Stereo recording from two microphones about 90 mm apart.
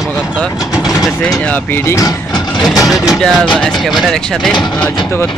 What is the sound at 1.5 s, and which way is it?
Speech, 20° left (ahead or behind).